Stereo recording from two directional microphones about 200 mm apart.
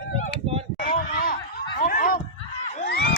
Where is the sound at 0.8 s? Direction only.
45° left (ahead or behind).